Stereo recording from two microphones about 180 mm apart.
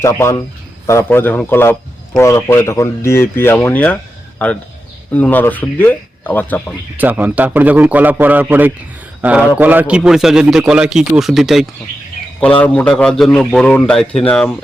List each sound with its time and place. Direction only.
0.0 s speech: 15° left (ahead or behind)
6.9 s a man's voice: 10° right (ahead or behind); by 14.5 s 5° left (ahead or behind)